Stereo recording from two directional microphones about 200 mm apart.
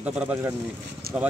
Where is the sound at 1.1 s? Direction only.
50° right (ahead or behind).